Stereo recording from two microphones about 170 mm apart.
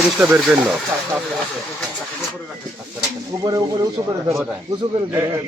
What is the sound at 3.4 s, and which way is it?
Speech, 20° right (ahead or behind).